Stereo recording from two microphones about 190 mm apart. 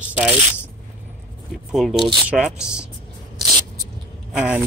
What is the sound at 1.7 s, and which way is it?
Speech, centre (ahead or behind).